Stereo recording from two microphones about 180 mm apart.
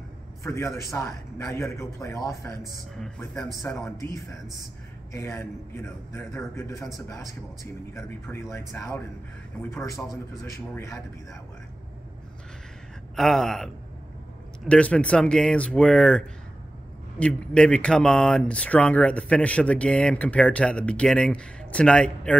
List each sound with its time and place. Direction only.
0.4 s a man's voice: 15° left (ahead or behind)
3.6 s a man's voice: 10° left (ahead or behind)
10.4 s a man's voice: 15° left (ahead or behind)
13.1 s speech: centre (ahead or behind)
14.7 s speech: 5° left (ahead or behind)